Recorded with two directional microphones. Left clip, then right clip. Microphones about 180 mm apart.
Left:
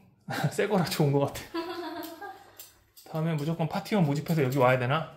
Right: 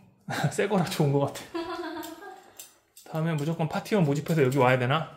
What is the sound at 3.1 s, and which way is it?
Speech, 15° right (ahead or behind).